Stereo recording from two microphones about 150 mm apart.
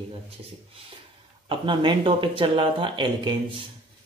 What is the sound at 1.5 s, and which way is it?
Speech, 30° right (ahead or behind).